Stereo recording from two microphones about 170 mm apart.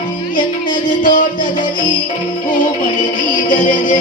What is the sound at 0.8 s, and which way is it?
Music, 50° left (ahead or behind).